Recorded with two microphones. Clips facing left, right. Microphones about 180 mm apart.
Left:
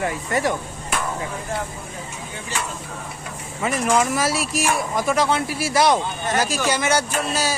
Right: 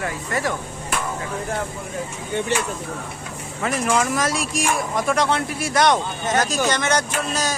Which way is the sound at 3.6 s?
5° left (ahead or behind).